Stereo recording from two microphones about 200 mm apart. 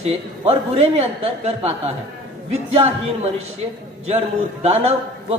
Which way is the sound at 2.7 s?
30° right (ahead or behind).